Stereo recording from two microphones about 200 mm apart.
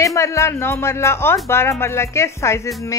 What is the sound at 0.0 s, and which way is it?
Speech, 15° left (ahead or behind).